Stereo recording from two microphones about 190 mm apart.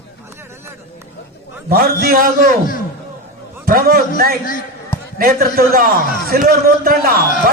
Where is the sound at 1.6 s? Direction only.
50° right (ahead or behind).